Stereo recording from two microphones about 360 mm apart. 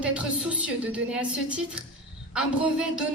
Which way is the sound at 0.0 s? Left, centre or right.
Centre.